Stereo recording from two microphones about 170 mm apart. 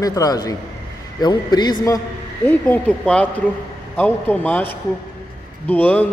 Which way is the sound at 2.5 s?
5° left (ahead or behind).